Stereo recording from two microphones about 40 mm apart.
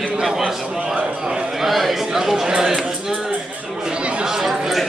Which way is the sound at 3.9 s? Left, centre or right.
Right.